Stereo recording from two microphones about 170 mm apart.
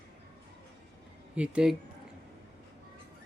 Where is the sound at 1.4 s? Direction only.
5° right (ahead or behind).